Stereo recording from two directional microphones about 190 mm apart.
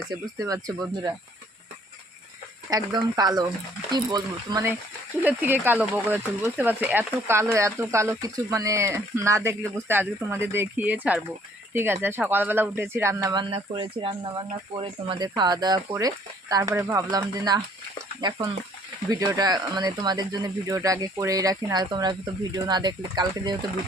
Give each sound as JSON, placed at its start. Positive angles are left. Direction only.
{"t": 0.3, "sound": "speech", "side_deg": -20}
{"t": 2.6, "sound": "speech", "side_deg": -20}